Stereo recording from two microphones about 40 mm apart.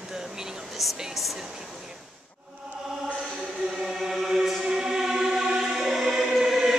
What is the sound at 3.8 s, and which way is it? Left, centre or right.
Chant, centre.